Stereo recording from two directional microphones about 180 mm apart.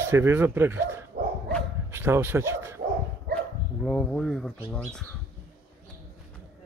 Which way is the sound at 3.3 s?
60° right (ahead or behind).